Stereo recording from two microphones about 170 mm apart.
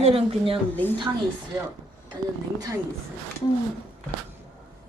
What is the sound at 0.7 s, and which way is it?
Speech, 10° left (ahead or behind).